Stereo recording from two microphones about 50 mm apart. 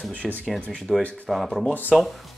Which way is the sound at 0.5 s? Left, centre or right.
Centre.